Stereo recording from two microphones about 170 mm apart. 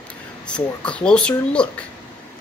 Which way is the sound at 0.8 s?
5° left (ahead or behind).